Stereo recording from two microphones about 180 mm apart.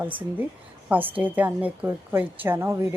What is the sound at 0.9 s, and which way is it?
Speech, 10° right (ahead or behind).